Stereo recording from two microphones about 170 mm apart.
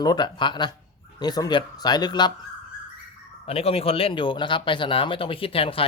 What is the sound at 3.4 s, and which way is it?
Speech, 35° left (ahead or behind).